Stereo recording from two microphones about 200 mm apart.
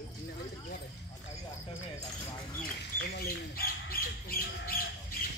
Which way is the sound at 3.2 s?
50° left (ahead or behind).